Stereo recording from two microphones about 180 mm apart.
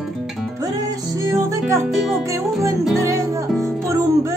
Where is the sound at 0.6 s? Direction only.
20° right (ahead or behind).